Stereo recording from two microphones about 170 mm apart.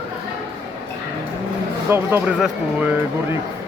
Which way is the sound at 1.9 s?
15° right (ahead or behind).